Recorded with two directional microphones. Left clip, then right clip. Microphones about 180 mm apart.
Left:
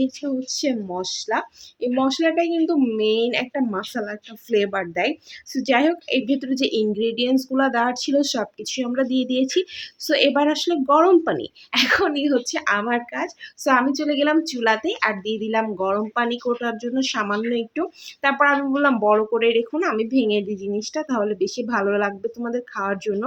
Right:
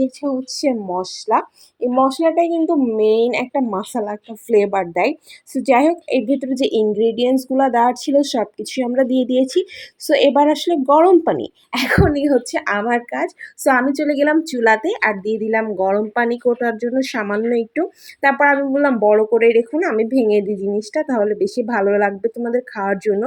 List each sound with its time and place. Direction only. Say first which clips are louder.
0.4 s a woman's voice: right 5 dB; 15° right (ahead or behind)